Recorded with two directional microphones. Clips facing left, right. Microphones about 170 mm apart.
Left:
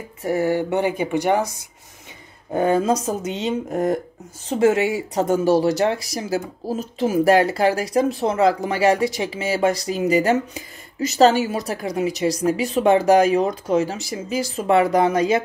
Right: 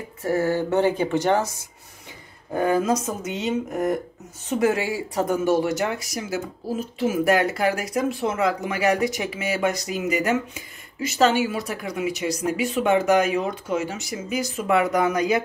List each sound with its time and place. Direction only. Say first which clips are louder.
0.2 s speech: left 2 dB; 15° left (ahead or behind)
2.5 s speech: left 3 dB; 25° left (ahead or behind)